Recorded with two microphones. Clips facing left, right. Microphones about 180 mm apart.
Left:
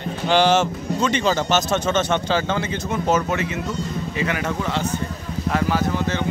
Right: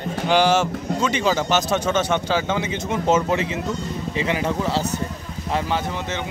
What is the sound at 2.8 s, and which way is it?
Speech, 25° right (ahead or behind).